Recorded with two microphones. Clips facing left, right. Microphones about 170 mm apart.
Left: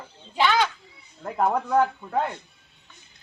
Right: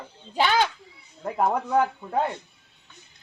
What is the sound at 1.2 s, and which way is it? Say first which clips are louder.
Speech: even; 10° right (ahead or behind).